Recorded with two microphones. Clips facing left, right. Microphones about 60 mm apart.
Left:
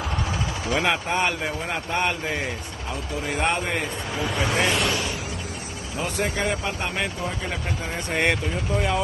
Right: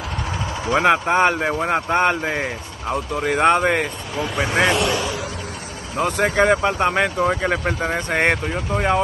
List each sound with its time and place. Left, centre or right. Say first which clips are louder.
0.7 s a man's voice: right 8 dB; right
5.9 s speech: right 8 dB; right